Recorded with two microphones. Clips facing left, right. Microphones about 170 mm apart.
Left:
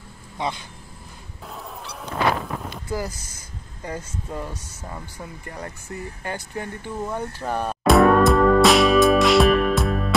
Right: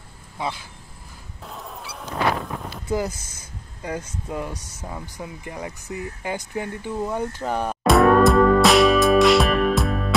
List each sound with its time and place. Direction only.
0.4 s speech: 5° right (ahead or behind)
1.5 s cat: centre (ahead or behind)
2.9 s speech: 20° right (ahead or behind)
7.8 s music: centre (ahead or behind)